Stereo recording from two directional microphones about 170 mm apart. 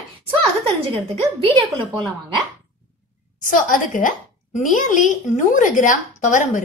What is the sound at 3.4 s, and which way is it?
A woman's voice, 50° left (ahead or behind).